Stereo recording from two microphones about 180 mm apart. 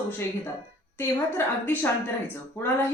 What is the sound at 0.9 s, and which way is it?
A woman's voice, 10° left (ahead or behind).